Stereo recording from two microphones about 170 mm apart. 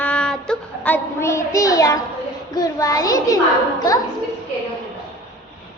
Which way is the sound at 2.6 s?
20° left (ahead or behind).